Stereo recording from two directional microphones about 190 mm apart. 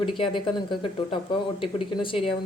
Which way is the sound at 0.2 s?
25° left (ahead or behind).